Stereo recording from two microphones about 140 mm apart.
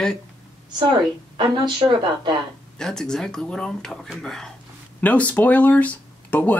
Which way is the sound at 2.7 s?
5° left (ahead or behind).